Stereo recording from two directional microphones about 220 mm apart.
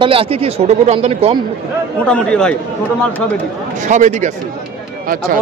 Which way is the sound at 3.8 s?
35° right (ahead or behind).